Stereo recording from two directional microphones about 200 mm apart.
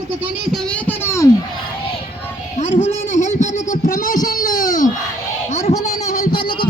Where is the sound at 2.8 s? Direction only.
35° left (ahead or behind).